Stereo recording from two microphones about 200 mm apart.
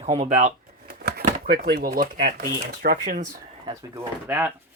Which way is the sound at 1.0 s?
50° right (ahead or behind).